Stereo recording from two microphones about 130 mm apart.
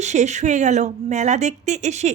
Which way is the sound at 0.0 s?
60° right (ahead or behind).